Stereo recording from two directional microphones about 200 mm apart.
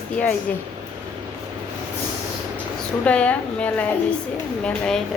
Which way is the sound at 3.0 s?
5° left (ahead or behind).